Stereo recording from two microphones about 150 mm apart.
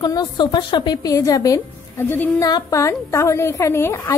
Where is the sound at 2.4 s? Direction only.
25° left (ahead or behind).